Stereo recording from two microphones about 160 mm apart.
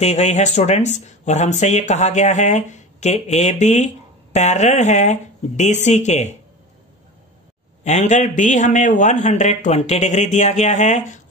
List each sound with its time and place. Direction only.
0.0 s speech: 45° left (ahead or behind)
7.8 s speech: 45° left (ahead or behind)